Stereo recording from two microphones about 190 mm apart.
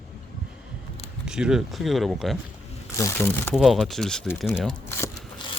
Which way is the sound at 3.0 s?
15° left (ahead or behind).